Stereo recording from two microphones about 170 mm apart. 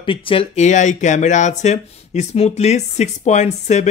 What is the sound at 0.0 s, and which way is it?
Speech, 30° left (ahead or behind).